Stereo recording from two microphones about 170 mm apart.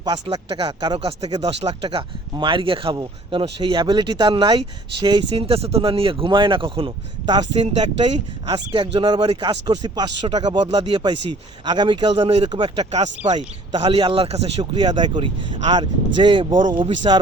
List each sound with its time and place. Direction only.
0.0 s speech: 25° right (ahead or behind)
7.6 s speech: 40° right (ahead or behind)
8.4 s speech: 30° right (ahead or behind)
10.2 s speech: 35° right (ahead or behind)